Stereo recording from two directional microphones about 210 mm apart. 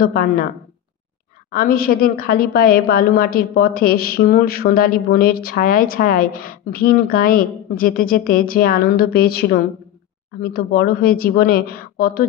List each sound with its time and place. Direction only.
0.0 s a woman's voice: 45° left (ahead or behind)
1.5 s a woman's voice: 45° left (ahead or behind)